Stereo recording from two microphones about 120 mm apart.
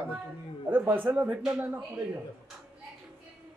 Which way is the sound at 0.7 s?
15° right (ahead or behind).